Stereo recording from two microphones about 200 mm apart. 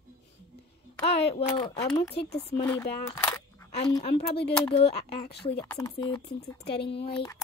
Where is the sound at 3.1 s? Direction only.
15° left (ahead or behind).